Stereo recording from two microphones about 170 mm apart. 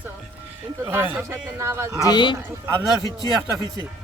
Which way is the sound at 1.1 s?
15° right (ahead or behind).